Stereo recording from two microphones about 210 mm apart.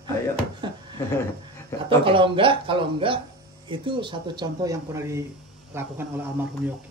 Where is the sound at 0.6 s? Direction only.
20° right (ahead or behind).